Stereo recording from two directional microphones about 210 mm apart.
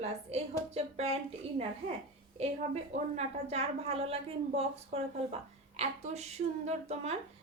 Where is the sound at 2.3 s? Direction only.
30° right (ahead or behind).